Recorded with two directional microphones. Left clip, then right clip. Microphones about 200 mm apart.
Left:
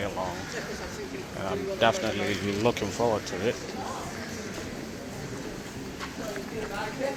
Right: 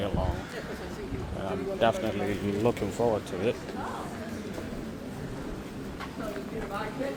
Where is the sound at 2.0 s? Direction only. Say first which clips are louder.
Left 2 dB; 10° right (ahead or behind).